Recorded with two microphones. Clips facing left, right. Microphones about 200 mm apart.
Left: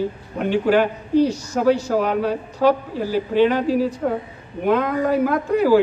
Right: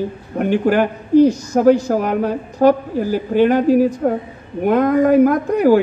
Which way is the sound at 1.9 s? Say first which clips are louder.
Right 2 dB; 50° right (ahead or behind).